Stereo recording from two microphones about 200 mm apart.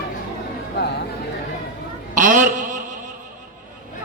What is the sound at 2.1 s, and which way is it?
Speech, 40° right (ahead or behind).